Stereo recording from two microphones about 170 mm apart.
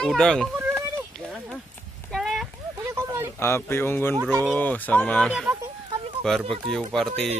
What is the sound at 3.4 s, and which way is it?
Speech, 15° left (ahead or behind).